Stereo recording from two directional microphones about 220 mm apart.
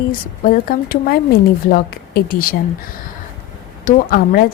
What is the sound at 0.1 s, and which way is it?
Speech, 40° left (ahead or behind).